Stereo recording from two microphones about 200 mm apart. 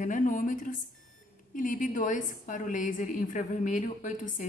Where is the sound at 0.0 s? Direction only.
40° left (ahead or behind).